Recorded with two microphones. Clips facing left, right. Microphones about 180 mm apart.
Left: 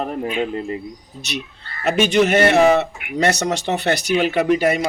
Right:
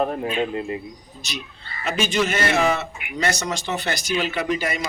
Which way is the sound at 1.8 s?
65° left (ahead or behind).